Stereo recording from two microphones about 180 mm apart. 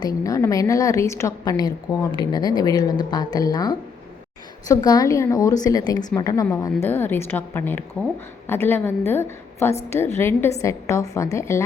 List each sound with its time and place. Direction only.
0.0 s a woman's voice: 20° left (ahead or behind)